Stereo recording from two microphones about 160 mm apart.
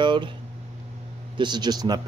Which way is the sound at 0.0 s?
30° right (ahead or behind).